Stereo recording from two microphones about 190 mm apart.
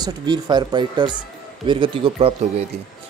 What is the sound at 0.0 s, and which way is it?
Speech, 20° right (ahead or behind).